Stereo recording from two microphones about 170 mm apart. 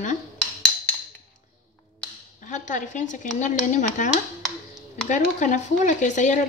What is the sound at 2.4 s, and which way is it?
Speech, 45° left (ahead or behind).